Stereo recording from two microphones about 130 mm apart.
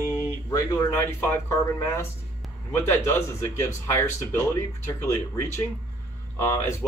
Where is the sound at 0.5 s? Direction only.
25° left (ahead or behind).